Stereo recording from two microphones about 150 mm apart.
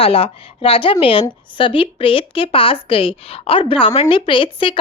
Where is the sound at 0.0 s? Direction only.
40° left (ahead or behind).